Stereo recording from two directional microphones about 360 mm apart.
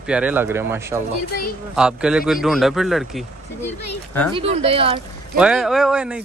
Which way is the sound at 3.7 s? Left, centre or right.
Left.